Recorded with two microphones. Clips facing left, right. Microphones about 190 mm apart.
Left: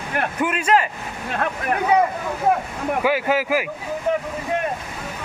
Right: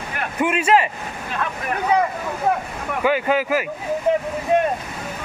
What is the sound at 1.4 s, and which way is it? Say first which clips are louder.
Speech: left 2 dB; 55° left (ahead or behind).